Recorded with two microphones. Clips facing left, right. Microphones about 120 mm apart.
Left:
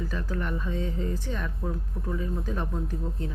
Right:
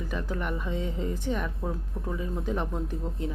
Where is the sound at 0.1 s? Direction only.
15° right (ahead or behind).